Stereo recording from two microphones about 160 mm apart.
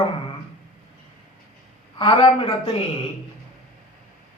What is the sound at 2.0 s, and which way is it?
Speech, 25° left (ahead or behind).